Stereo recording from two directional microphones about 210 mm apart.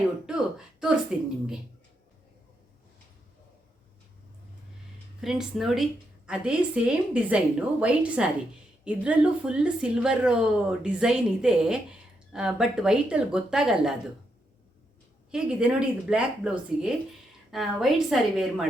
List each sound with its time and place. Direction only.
0.3 s speech: 5° right (ahead or behind)
5.2 s a woman's voice: centre (ahead or behind)
15.3 s a woman's voice: 5° right (ahead or behind)